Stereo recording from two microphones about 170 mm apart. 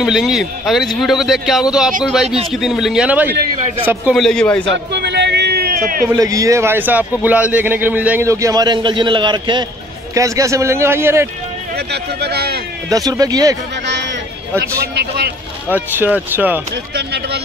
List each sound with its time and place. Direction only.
0.0 s a man's voice: 5° right (ahead or behind)
4.1 s a man's voice: centre (ahead or behind)
4.9 s a sound: 80° right; by 6.0 s 60° right (ahead or behind)
6.0 s a man's voice: 20° right (ahead or behind)
11.7 s speech: 75° right (ahead or behind)
12.9 s speech: 20° right (ahead or behind)
13.8 s a sound: 90° right
14.6 s a man's voice: 70° right (ahead or behind)
15.7 s a man's voice: 10° right (ahead or behind)
16.9 s a man's voice: 75° right (ahead or behind)